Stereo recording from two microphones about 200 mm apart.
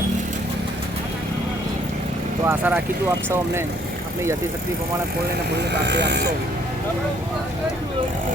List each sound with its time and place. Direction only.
2.5 s speech: 10° right (ahead or behind)
5.5 s speech: 60° right (ahead or behind)